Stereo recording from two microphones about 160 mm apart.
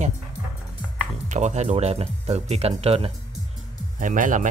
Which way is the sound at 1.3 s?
45° right (ahead or behind).